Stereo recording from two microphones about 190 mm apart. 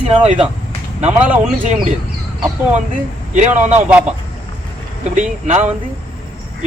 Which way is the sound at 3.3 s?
40° right (ahead or behind).